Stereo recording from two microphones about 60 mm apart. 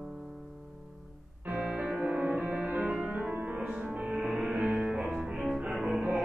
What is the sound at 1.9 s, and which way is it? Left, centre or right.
Music, right.